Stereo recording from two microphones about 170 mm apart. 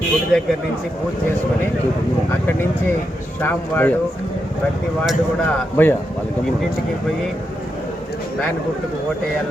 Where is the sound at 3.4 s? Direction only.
10° left (ahead or behind).